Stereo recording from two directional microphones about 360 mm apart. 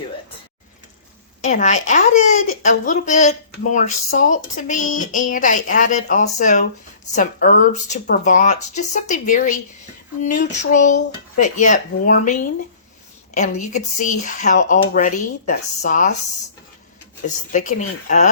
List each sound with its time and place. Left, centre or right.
1.4 s speech: centre
17.2 s speech: left